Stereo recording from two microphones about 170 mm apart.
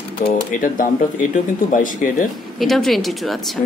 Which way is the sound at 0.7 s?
55° left (ahead or behind).